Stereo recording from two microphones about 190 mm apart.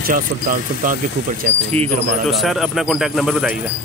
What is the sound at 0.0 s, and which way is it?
Speech, 45° right (ahead or behind).